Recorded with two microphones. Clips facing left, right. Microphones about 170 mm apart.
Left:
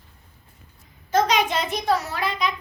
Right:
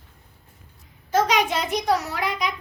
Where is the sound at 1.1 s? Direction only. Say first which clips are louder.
Even; 10° right (ahead or behind).